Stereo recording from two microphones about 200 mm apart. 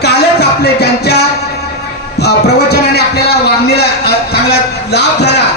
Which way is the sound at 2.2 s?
55° left (ahead or behind).